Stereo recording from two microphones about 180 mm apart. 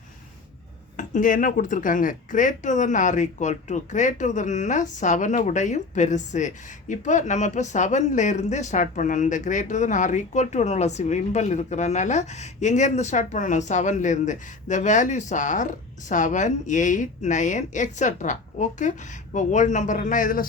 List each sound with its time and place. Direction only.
0.9 s speech: 45° left (ahead or behind)